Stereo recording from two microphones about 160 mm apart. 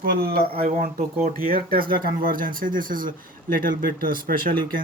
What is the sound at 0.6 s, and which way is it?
Speech, 55° right (ahead or behind).